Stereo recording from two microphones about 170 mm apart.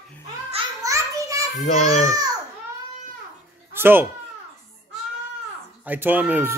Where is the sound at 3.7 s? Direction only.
10° right (ahead or behind).